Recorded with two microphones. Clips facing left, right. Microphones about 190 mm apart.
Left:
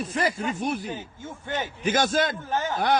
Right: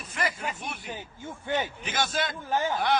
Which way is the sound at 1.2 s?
15° right (ahead or behind).